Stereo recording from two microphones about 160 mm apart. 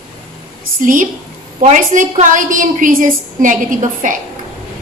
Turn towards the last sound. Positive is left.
turn(degrees=-55)  # may be behind; listen again after turning